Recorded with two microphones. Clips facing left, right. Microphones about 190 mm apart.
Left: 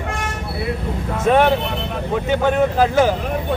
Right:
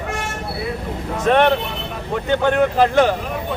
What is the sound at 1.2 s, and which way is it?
A man's voice, 5° left (ahead or behind).